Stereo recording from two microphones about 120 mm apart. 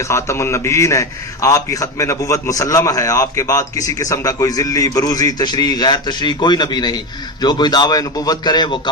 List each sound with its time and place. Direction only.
0.0 s a man's voice: 25° left (ahead or behind)